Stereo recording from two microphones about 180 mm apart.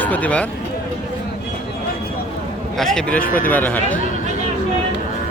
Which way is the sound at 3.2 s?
50° left (ahead or behind).